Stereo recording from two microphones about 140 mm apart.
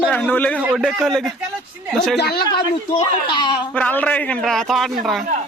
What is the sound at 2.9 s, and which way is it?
Speech, 35° left (ahead or behind).